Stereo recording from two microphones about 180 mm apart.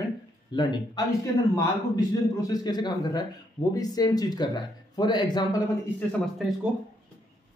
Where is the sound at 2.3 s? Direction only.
20° left (ahead or behind).